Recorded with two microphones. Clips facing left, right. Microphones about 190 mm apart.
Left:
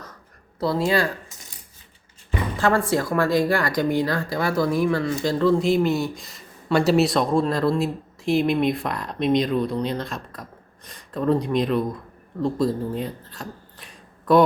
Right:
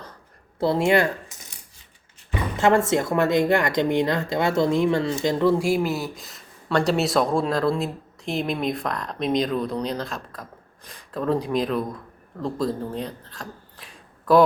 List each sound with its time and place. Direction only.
0.6 s speech: 25° right (ahead or behind)
2.6 s speech: 25° right (ahead or behind); by 14.4 s centre (ahead or behind)